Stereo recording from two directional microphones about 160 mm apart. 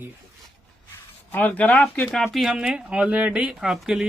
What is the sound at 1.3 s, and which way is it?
Speech, 10° left (ahead or behind).